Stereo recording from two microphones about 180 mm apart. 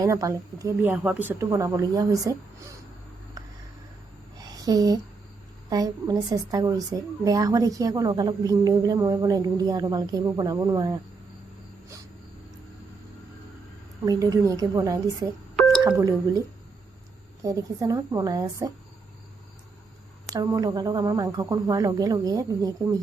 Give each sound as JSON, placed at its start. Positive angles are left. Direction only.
{"t": 0.0, "sound": "speech", "side_deg": -20}
{"t": 4.4, "sound": "a sound", "side_deg": -20}
{"t": 5.6, "sound": "a woman's voice", "side_deg": -20}
{"t": 14.0, "sound": "a woman's voice", "side_deg": -20}
{"t": 17.4, "sound": "a woman's voice", "side_deg": -20}
{"t": 20.2, "sound": "a woman's voice", "side_deg": -20}